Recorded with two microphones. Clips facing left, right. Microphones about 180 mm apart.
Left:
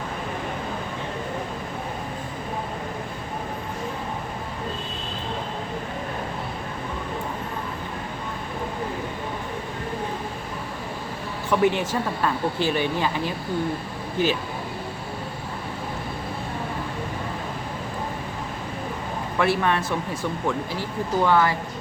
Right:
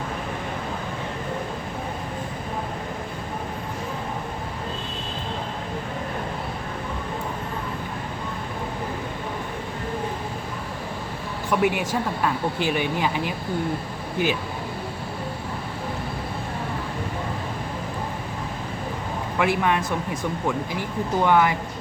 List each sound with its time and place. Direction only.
11.6 s speech: 10° right (ahead or behind)
19.4 s speech: 15° right (ahead or behind)
21.2 s speech: 15° right (ahead or behind)